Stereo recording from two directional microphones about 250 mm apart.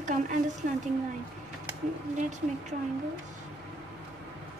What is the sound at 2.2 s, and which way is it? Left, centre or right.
Speech, right.